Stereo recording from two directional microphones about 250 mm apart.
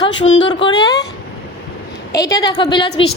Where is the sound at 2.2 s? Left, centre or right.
Centre.